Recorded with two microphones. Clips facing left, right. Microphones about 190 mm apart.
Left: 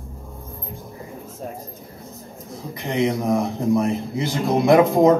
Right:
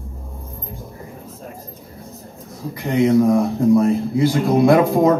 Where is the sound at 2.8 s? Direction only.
20° left (ahead or behind).